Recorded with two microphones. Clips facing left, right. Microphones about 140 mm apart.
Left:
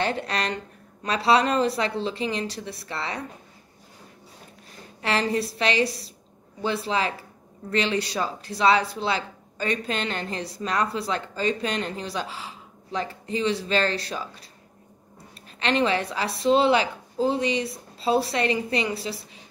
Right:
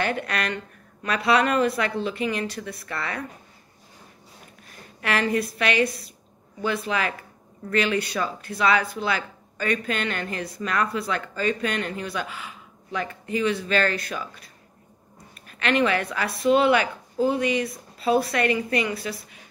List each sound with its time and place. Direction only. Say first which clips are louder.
0.0 s a woman's voice: even; 30° left (ahead or behind)
5.0 s a woman's voice: right 1 dB; 30° left (ahead or behind)